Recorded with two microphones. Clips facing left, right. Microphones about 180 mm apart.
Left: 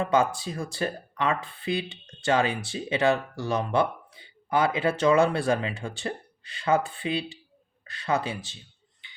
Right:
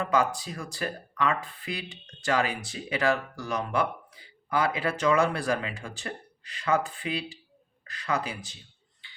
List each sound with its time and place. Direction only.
0.0 s speech: 25° left (ahead or behind)
9.0 s finger snapping: 20° left (ahead or behind)